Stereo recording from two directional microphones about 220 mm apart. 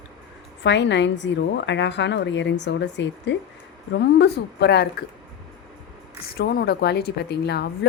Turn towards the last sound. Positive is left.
turn(degrees=50)  # may be behind; listen again after turning